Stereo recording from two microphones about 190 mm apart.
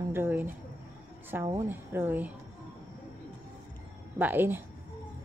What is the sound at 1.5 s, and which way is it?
Speech, 10° right (ahead or behind).